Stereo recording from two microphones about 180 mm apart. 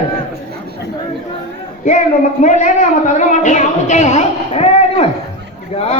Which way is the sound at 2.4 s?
40° left (ahead or behind).